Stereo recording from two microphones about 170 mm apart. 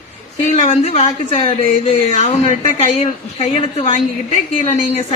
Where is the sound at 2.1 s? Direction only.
45° left (ahead or behind).